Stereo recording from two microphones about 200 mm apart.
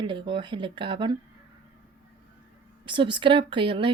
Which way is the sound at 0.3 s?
25° right (ahead or behind).